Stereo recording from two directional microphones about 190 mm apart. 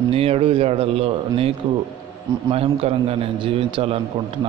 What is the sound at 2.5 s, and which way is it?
A man's voice, 30° right (ahead or behind).